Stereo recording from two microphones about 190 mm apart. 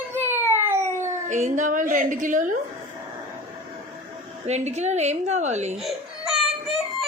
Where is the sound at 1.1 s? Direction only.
40° right (ahead or behind).